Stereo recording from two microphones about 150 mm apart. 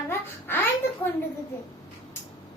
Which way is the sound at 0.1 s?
15° left (ahead or behind).